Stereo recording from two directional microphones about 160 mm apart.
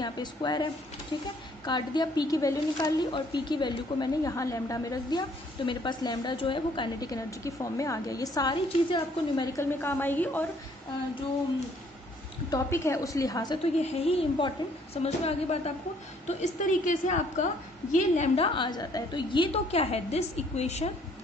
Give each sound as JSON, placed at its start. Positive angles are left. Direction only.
{"t": 0.0, "sound": "a woman's voice", "side_deg": 25}
{"t": 12.4, "sound": "a woman's voice", "side_deg": 20}
{"t": 13.7, "sound": "a woman's voice", "side_deg": 40}
{"t": 16.3, "sound": "a woman's voice", "side_deg": 50}